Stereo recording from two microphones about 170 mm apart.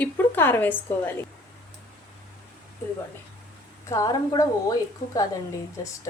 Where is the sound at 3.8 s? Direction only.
20° left (ahead or behind).